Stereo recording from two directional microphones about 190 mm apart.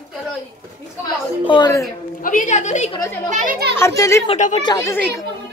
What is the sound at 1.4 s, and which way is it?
Speech, 25° left (ahead or behind).